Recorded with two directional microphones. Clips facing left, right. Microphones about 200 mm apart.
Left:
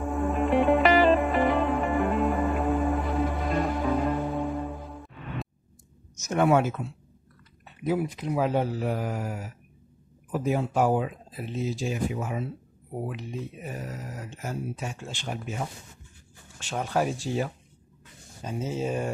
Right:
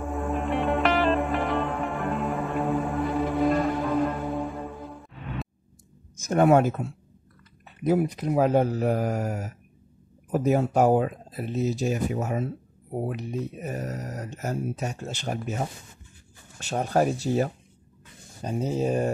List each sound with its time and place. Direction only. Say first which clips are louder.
0.0 s music: left 2 dB; centre (ahead or behind)
6.2 s speech: right 3 dB; 45° right (ahead or behind)